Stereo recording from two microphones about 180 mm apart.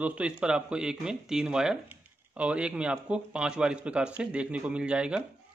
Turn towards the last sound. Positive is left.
turn(degrees=-5)  # may be behind; listen again after turning